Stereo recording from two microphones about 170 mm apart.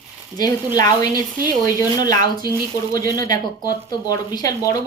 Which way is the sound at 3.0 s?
20° left (ahead or behind).